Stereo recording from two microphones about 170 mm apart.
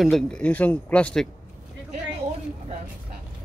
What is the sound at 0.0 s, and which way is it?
Speech, 5° left (ahead or behind).